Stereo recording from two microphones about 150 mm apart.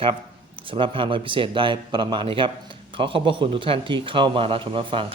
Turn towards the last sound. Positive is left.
turn(degrees=-35)  # may be behind; listen again after turning